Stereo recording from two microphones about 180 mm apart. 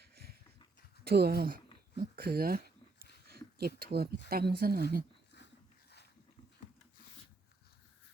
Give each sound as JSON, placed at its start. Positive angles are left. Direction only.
{"t": 1.0, "sound": "speech", "side_deg": -60}
{"t": 2.0, "sound": "a sound", "side_deg": -55}
{"t": 3.8, "sound": "speech", "side_deg": -60}